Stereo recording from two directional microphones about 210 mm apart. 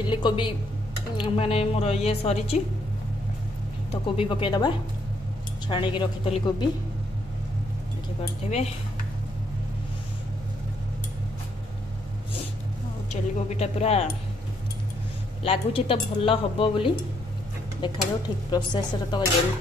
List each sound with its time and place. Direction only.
0.0 s speech: 20° left (ahead or behind)
3.9 s speech: 25° left (ahead or behind)
13.1 s speech: 30° left (ahead or behind)
15.4 s speech: 25° left (ahead or behind)